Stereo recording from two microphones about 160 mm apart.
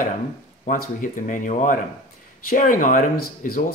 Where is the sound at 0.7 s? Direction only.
55° left (ahead or behind).